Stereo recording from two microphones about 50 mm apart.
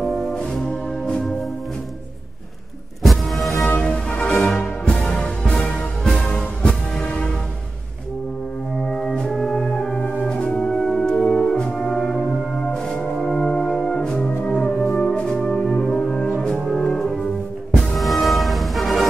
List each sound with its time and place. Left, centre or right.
0.0 s brass instrument: centre
0.7 s music: left
3.0 s music: centre
3.8 s music: centre
8.8 s music: centre
9.7 s organ: centre
10.2 s music: left
10.7 s music: centre; by 15.0 s left
15.0 s brass instrument: centre
16.3 s music: centre
17.9 s music: centre